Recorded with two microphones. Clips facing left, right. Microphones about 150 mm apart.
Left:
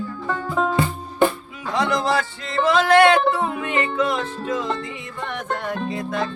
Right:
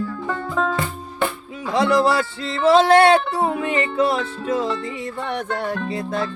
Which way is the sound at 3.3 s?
35° right (ahead or behind).